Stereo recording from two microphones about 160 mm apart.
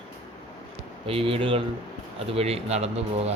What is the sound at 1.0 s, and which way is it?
Speech, 35° right (ahead or behind).